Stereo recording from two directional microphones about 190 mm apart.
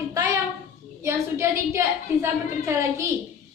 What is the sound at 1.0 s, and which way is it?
A woman's voice, 15° right (ahead or behind).